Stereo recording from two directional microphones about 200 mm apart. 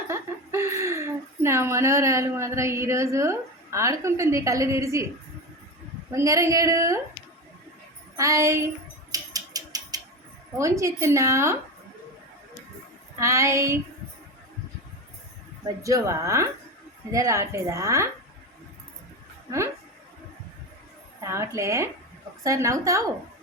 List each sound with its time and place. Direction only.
0.1 s a woman's voice: 15° right (ahead or behind)
6.1 s a woman's voice: 15° right (ahead or behind)
8.1 s a woman's voice: 15° right (ahead or behind)
9.1 s a sound: 20° right (ahead or behind)
10.6 s a woman's voice: 15° right (ahead or behind)
13.1 s a woman's voice: 15° right (ahead or behind)
15.6 s a woman's voice: 15° right (ahead or behind)
19.5 s a woman's voice: 15° right (ahead or behind)
21.2 s a woman's voice: 15° right (ahead or behind)